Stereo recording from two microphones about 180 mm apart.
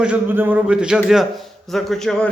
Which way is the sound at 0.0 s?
10° right (ahead or behind).